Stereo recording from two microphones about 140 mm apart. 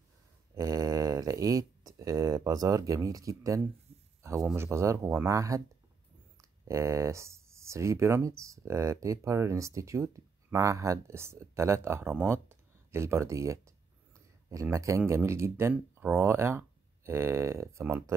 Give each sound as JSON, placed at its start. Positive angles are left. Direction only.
{"t": 0.6, "sound": "speech", "side_deg": -25}
{"t": 6.7, "sound": "speech", "side_deg": -20}